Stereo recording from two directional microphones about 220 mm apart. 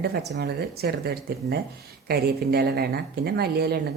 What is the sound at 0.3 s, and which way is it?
Speech, 45° right (ahead or behind).